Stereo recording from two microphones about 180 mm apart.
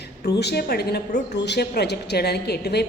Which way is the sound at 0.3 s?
65° left (ahead or behind).